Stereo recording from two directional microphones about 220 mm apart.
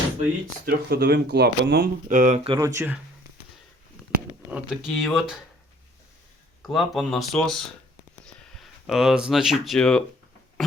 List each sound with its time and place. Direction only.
0.6 s speech: 45° right (ahead or behind); by 2.9 s 10° right (ahead or behind)
4.5 s speech: centre (ahead or behind)
6.6 s speech: centre (ahead or behind)